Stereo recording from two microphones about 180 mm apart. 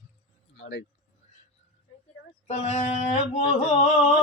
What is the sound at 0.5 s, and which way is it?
Speech, 90° left.